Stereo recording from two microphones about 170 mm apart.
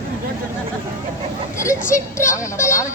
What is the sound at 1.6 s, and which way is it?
Speech, 15° left (ahead or behind).